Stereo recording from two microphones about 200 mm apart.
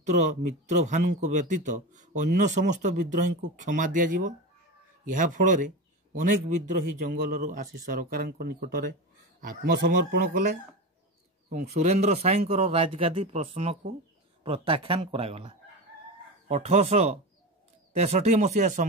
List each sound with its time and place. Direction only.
0.0 s a man's voice: 35° right (ahead or behind)
11.5 s a man's voice: 35° right (ahead or behind)